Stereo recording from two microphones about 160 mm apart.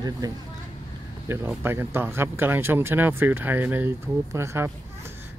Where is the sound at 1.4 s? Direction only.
15° right (ahead or behind).